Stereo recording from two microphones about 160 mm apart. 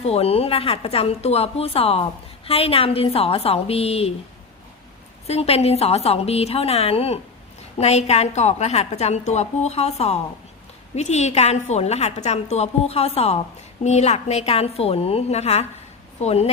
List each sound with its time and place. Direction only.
0.0 s a woman's voice: 40° left (ahead or behind)
5.2 s a woman's voice: 40° left (ahead or behind)